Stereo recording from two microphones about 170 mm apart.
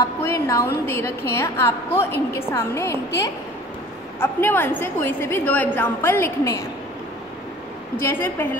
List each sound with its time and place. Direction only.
0.2 s a woman's voice: 15° left (ahead or behind)
4.2 s a woman's voice: 10° left (ahead or behind)
8.0 s a woman's voice: 15° left (ahead or behind)